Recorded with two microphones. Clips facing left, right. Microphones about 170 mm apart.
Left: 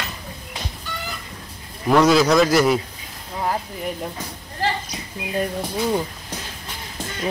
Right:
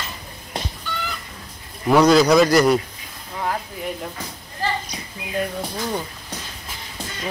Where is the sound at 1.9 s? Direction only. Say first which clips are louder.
Right 1 dB; centre (ahead or behind).